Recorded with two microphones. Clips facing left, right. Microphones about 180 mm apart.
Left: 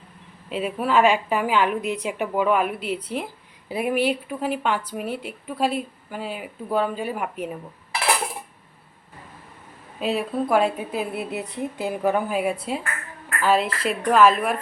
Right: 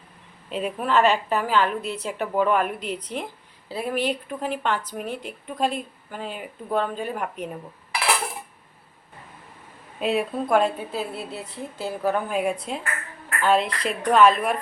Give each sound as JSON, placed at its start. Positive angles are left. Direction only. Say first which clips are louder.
{"t": 0.5, "sound": "speech", "louder": "left 1 dB", "side_deg": 5}
{"t": 10.0, "sound": "speech", "louder": "even", "side_deg": 0}
{"t": 10.9, "sound": "speech", "louder": "left 3 dB", "side_deg": 15}